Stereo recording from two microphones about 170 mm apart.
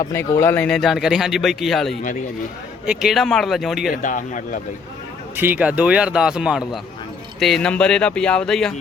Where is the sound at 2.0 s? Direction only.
50° left (ahead or behind).